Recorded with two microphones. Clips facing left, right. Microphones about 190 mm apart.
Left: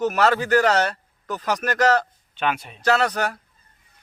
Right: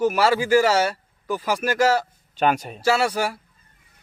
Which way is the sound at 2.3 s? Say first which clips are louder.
Right 4 dB; 40° right (ahead or behind).